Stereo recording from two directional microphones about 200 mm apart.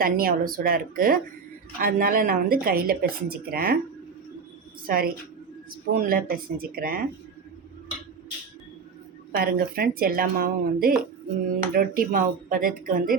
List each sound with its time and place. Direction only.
0.0 s speech: 50° right (ahead or behind)
4.9 s speech: 45° right (ahead or behind)
9.3 s speech: 50° right (ahead or behind)